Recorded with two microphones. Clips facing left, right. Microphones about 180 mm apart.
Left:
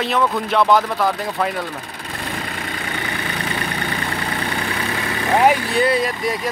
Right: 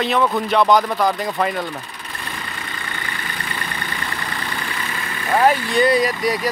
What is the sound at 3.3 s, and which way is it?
Vehicle, 75° left (ahead or behind).